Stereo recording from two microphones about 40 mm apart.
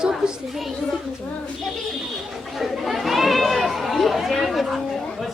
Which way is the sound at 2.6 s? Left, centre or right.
Centre.